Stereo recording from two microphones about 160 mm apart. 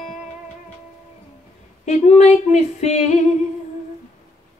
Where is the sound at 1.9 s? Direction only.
45° left (ahead or behind).